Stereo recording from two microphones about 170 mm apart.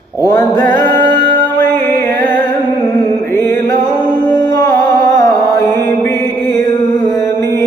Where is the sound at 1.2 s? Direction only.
55° right (ahead or behind).